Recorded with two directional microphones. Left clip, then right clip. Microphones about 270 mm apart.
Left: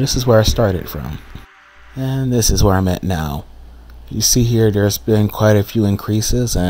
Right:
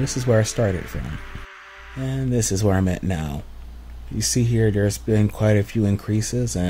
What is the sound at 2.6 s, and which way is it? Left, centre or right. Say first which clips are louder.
Speech: left 6 dB; centre.